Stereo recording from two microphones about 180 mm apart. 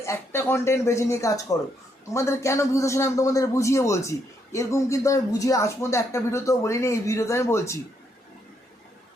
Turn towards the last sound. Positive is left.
turn(degrees=15)  # may be behind; listen again after turning